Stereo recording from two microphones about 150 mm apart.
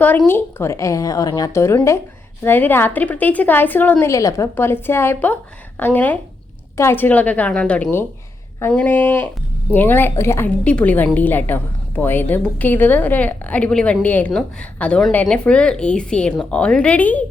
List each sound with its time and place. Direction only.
0.3 s a woman's voice: 15° left (ahead or behind)